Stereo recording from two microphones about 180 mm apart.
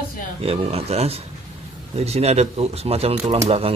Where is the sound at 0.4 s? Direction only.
30° right (ahead or behind).